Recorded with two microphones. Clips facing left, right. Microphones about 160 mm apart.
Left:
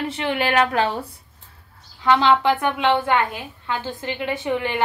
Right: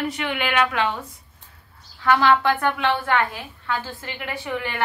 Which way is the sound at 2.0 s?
20° left (ahead or behind).